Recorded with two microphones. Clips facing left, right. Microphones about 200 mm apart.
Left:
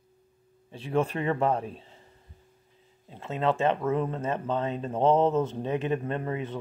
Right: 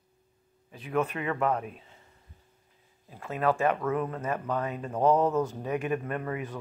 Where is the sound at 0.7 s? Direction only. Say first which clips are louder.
Left 2 dB; 30° left (ahead or behind).